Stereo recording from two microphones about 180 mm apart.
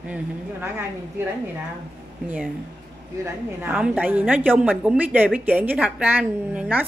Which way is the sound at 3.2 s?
10° right (ahead or behind).